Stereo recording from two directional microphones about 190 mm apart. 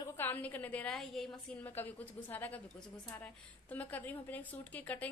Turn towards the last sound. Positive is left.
turn(degrees=10)  # may be behind; listen again after turning